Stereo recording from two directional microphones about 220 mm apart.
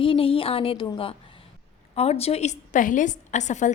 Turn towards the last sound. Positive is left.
turn(degrees=35)  # may be behind; listen again after turning